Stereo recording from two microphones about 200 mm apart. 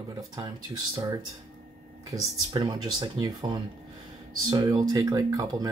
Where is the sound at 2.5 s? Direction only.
20° right (ahead or behind).